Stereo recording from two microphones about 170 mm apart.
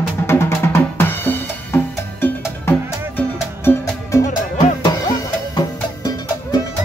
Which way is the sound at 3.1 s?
10° left (ahead or behind).